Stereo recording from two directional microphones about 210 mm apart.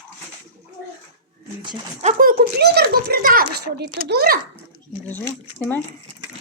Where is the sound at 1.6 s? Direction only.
20° right (ahead or behind).